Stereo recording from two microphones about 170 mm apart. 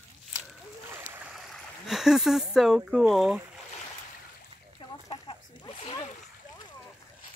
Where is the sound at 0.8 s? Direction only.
10° right (ahead or behind).